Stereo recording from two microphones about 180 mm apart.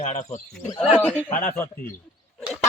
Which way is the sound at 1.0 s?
10° left (ahead or behind).